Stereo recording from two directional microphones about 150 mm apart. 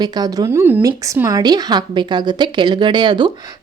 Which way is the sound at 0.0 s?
25° right (ahead or behind).